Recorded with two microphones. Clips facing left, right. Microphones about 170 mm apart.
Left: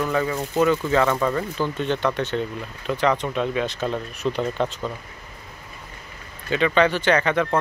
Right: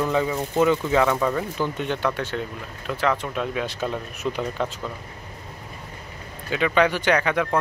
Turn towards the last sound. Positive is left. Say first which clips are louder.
# left 1 dB
turn(degrees=-10)  # may be behind; listen again after turning